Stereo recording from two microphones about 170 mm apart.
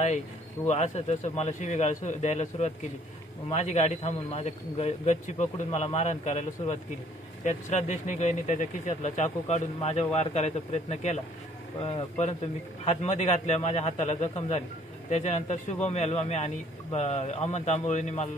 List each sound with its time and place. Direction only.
0.7 s a man's voice: 40° left (ahead or behind)